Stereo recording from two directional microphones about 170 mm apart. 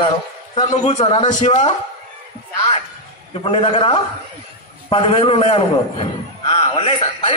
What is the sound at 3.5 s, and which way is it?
A man's voice, 35° left (ahead or behind).